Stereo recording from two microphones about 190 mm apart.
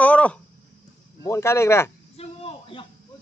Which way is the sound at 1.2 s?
15° left (ahead or behind).